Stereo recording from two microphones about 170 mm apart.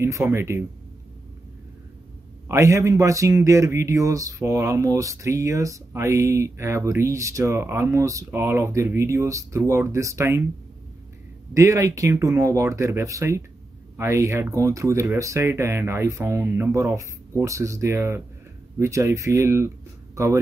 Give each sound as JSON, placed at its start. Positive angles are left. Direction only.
{"t": 0.0, "sound": "speech", "side_deg": -15}
{"t": 2.4, "sound": "speech", "side_deg": -15}
{"t": 11.5, "sound": "speech", "side_deg": -20}